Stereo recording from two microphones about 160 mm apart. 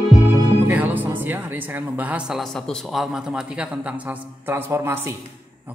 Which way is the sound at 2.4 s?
5° left (ahead or behind).